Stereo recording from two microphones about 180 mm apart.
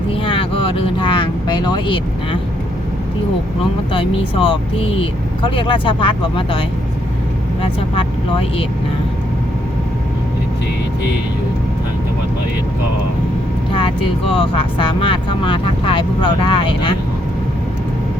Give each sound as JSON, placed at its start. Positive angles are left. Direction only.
{"t": 0.1, "sound": "speech", "side_deg": 30}
{"t": 3.9, "sound": "speech", "side_deg": 30}
{"t": 7.6, "sound": "speech", "side_deg": 30}
{"t": 13.7, "sound": "speech", "side_deg": 30}